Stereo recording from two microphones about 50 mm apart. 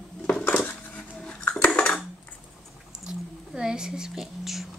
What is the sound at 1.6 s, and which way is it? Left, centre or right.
Dishes, centre.